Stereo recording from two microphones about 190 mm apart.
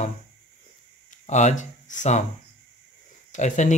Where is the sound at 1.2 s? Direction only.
40° left (ahead or behind).